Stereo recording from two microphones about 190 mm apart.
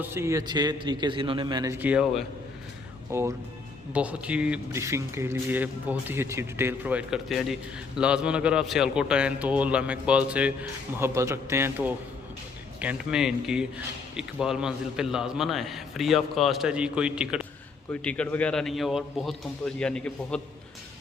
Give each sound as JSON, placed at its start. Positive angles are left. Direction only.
{"t": 0.0, "sound": "a man's voice", "side_deg": -15}
{"t": 17.9, "sound": "a man's voice", "side_deg": 5}